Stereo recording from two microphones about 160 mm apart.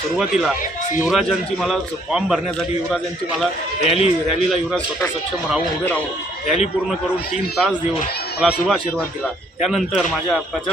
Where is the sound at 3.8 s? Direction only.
40° left (ahead or behind).